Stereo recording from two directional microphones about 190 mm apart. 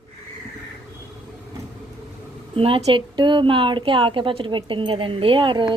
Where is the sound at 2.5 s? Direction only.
30° right (ahead or behind).